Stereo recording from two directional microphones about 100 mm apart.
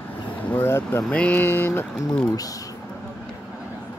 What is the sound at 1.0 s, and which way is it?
Speech, 10° left (ahead or behind).